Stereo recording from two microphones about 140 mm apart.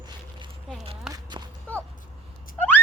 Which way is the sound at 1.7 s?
10° left (ahead or behind).